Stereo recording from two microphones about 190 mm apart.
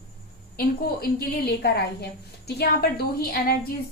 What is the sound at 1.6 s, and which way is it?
A woman's voice, 55° left (ahead or behind).